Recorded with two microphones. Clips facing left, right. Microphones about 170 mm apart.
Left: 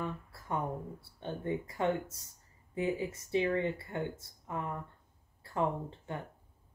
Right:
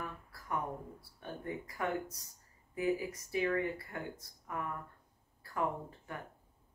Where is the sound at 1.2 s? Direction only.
25° left (ahead or behind).